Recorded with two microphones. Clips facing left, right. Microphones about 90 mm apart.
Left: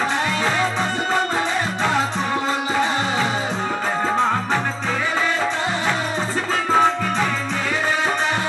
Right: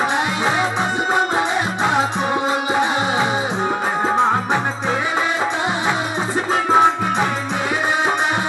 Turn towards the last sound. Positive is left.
turn(degrees=-15)  # may be behind; listen again after turning